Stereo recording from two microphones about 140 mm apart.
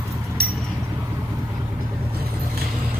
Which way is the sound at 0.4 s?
90° right.